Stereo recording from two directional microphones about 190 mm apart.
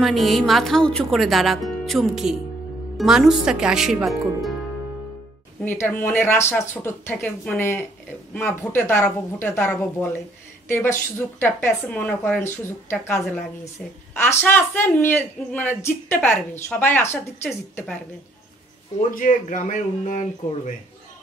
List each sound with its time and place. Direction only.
0.0 s speech: centre (ahead or behind)
5.6 s speech: 10° left (ahead or behind)
14.1 s speech: 10° left (ahead or behind)
19.0 s speech: 45° left (ahead or behind)